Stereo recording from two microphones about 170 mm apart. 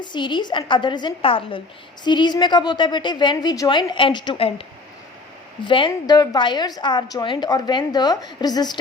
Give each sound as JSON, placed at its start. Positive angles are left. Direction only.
{"t": 0.0, "sound": "a woman's voice", "side_deg": 25}
{"t": 5.6, "sound": "a woman's voice", "side_deg": 30}